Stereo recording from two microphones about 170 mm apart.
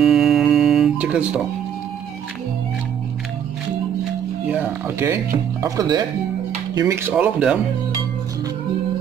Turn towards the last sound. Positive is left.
turn(degrees=-10)  # may be behind; listen again after turning